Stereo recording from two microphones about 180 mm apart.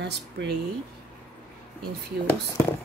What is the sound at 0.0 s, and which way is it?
Speech, 70° right (ahead or behind).